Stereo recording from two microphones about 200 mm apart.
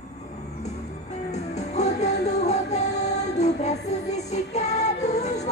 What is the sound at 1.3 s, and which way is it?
Music, 35° left (ahead or behind).